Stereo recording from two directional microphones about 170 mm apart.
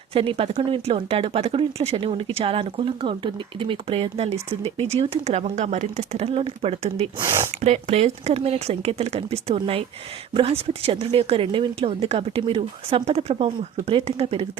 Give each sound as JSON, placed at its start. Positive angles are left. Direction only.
{"t": 0.1, "sound": "speech", "side_deg": -35}
{"t": 7.2, "sound": "speech", "side_deg": -15}
{"t": 7.6, "sound": "speech", "side_deg": -40}